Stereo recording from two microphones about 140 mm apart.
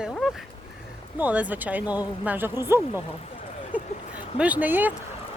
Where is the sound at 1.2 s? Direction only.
10° right (ahead or behind).